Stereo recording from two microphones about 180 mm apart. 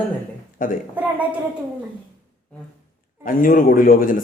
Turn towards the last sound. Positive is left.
turn(degrees=50)  # may be behind; listen again after turning